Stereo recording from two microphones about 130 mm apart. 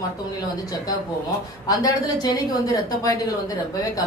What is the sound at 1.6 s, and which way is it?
A woman's voice, 30° left (ahead or behind).